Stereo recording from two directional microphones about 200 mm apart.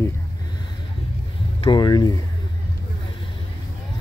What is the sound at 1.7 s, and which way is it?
Speech, 20° left (ahead or behind).